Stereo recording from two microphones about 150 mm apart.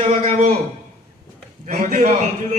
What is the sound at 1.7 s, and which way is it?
Speech, 45° right (ahead or behind).